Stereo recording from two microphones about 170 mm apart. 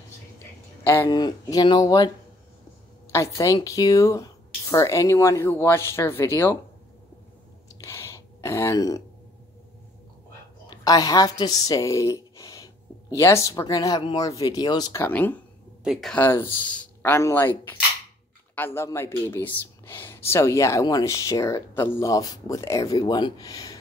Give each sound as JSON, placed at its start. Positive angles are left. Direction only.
{"t": 0.8, "sound": "speech", "side_deg": 20}
{"t": 3.1, "sound": "speech", "side_deg": 20}
{"t": 7.8, "sound": "a sound", "side_deg": 15}
{"t": 10.7, "sound": "a woman's voice", "side_deg": 20}
{"t": 15.0, "sound": "speech", "side_deg": 10}
{"t": 15.8, "sound": "speech", "side_deg": 0}
{"t": 16.2, "sound": "speech", "side_deg": 10}